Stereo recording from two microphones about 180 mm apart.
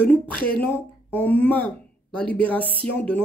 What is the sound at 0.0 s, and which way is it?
Speech, 10° left (ahead or behind).